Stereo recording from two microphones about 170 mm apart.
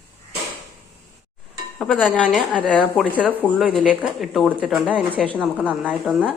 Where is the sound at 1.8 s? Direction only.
Centre (ahead or behind).